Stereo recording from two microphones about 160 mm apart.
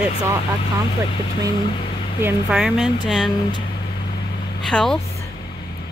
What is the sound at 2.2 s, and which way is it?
A woman's voice, 5° right (ahead or behind).